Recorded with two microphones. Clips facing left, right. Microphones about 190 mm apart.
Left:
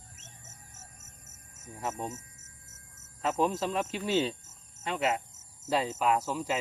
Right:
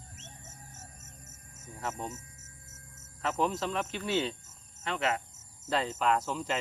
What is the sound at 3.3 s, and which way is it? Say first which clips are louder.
Speech: left 2 dB; 15° left (ahead or behind).